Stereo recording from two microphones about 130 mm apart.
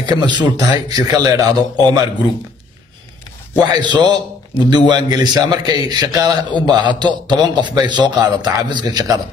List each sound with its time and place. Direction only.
0.0 s a man's voice: 35° right (ahead or behind)
3.7 s a man's voice: 35° right (ahead or behind)